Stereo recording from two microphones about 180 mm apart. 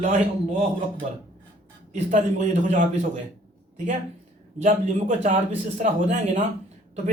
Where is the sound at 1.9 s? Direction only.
40° right (ahead or behind).